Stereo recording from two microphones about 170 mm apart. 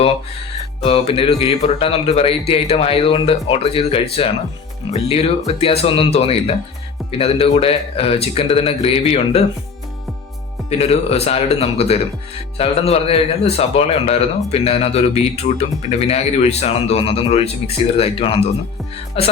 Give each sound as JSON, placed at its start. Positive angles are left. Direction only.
{"t": 0.9, "sound": "speech", "side_deg": 35}
{"t": 10.7, "sound": "speech", "side_deg": 35}